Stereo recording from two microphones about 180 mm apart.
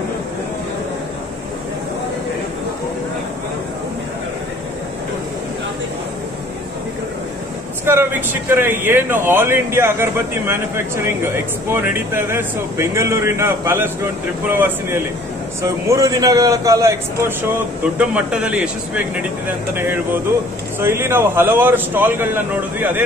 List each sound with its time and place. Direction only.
7.8 s speech: 15° right (ahead or behind)
15.9 s a man's voice: 20° right (ahead or behind)
17.9 s speech: 5° right (ahead or behind)
19.7 s speech: 10° right (ahead or behind)